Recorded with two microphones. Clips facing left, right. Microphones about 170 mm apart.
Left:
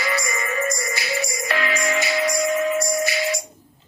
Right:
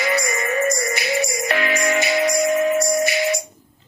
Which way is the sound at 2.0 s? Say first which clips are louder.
Right 4 dB; 20° right (ahead or behind).